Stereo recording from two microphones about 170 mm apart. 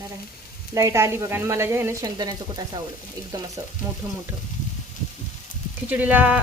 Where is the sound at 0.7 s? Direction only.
20° right (ahead or behind).